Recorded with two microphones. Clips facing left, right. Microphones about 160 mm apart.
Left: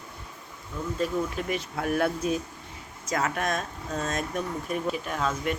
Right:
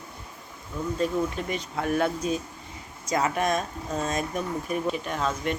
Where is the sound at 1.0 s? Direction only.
5° left (ahead or behind).